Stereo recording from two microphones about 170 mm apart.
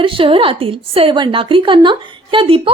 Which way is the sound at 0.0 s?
30° right (ahead or behind).